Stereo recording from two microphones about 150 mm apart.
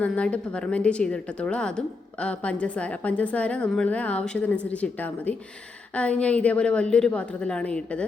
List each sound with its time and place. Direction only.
0.0 s a woman's voice: 10° left (ahead or behind)